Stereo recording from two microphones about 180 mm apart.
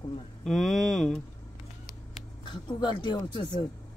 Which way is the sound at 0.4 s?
Centre (ahead or behind).